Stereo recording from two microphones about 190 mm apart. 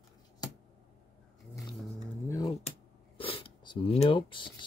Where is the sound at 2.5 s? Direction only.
30° left (ahead or behind).